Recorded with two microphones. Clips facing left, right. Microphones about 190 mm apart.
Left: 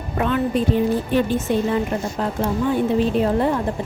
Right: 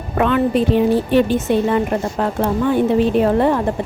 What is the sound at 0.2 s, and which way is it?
A woman's voice, 75° right (ahead or behind).